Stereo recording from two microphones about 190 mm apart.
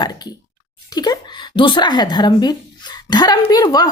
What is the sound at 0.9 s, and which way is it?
Speech, 20° left (ahead or behind).